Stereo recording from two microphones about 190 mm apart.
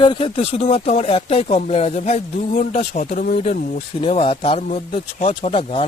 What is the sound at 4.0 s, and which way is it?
Speech, 25° left (ahead or behind).